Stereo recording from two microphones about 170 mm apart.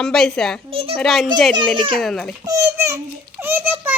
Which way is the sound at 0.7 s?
35° right (ahead or behind).